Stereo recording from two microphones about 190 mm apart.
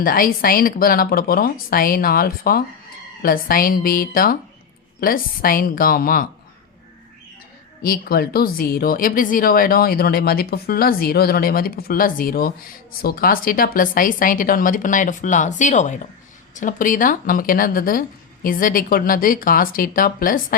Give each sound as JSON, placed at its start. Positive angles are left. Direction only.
{"t": 0.0, "sound": "speech", "side_deg": 50}
{"t": 7.8, "sound": "speech", "side_deg": 50}